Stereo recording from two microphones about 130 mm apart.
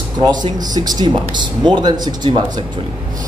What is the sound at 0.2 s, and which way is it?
A man's voice, 30° right (ahead or behind).